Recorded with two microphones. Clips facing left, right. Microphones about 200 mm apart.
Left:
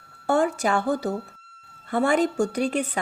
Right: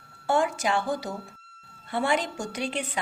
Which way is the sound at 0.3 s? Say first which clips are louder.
Left 3 dB; 40° left (ahead or behind).